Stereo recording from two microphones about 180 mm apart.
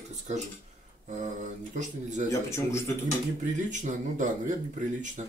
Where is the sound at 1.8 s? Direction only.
40° right (ahead or behind).